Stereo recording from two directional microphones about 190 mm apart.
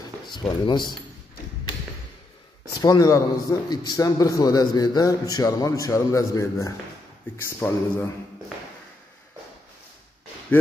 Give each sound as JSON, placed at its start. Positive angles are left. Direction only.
{"t": 0.3, "sound": "speech", "side_deg": 25}
{"t": 2.8, "sound": "a man's voice", "side_deg": 20}